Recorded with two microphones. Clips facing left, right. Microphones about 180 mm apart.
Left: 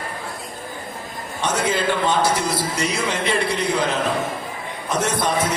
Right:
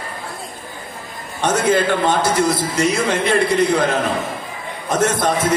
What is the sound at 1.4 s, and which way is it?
A man's voice, 50° right (ahead or behind).